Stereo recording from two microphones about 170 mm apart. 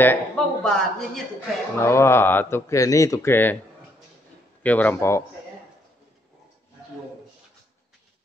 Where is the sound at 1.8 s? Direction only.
15° left (ahead or behind).